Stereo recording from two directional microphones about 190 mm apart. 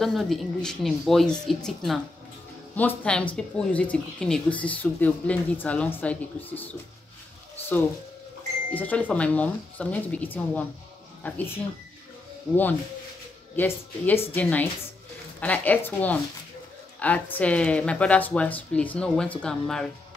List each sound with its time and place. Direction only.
0.0 s speech: centre (ahead or behind)
8.7 s speech: 10° left (ahead or behind)
13.6 s speech: 10° left (ahead or behind)